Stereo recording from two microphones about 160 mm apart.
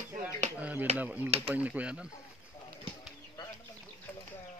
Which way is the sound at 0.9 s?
10° right (ahead or behind).